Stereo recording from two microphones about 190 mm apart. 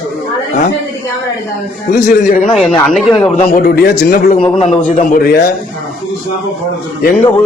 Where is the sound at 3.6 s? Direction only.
50° left (ahead or behind).